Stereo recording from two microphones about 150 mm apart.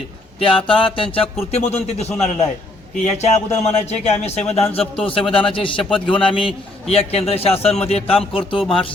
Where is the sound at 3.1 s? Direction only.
45° left (ahead or behind).